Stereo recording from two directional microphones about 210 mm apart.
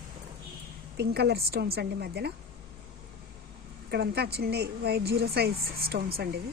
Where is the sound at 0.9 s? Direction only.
50° right (ahead or behind).